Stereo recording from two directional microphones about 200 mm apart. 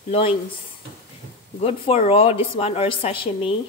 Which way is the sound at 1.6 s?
30° left (ahead or behind).